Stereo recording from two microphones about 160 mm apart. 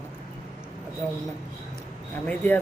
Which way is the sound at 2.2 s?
10° left (ahead or behind).